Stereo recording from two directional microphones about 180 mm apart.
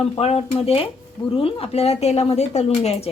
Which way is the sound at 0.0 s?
35° left (ahead or behind).